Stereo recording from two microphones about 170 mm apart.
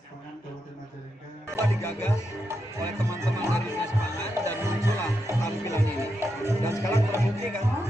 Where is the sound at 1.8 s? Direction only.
15° left (ahead or behind).